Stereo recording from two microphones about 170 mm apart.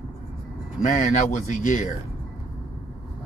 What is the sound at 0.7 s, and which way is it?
Speech, 45° left (ahead or behind).